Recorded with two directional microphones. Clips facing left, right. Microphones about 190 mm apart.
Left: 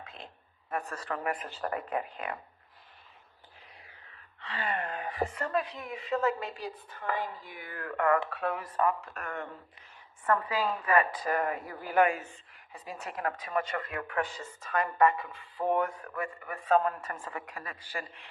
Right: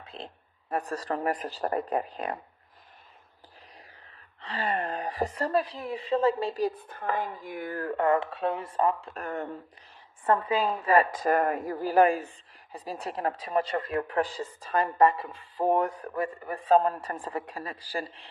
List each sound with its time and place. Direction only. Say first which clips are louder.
0.0 s a sound: right 5 dB; 30° right (ahead or behind)
0.7 s speech: right 5 dB; 35° right (ahead or behind)
4.4 s speech: right 4 dB; 35° right (ahead or behind)
6.6 s a woman's voice: right 10 dB; 50° right (ahead or behind); by 11.0 s 25° right (ahead or behind)
11.1 s speech: right 5 dB; 45° right (ahead or behind)